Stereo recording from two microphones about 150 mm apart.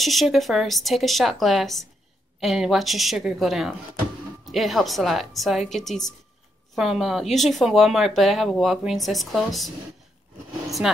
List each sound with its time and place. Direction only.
0.0 s speech: centre (ahead or behind)